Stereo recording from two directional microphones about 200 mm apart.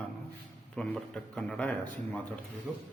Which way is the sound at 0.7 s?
5° left (ahead or behind).